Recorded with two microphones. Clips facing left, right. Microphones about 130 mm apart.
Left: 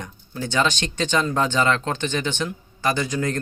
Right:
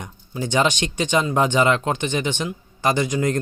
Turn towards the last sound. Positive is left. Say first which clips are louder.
# right 3 dB
turn(degrees=-20)  # may be behind; listen again after turning